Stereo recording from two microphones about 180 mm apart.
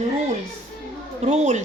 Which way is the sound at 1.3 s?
40° right (ahead or behind).